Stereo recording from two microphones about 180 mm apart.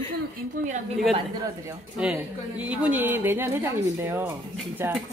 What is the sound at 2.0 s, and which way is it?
A woman's voice, 5° right (ahead or behind).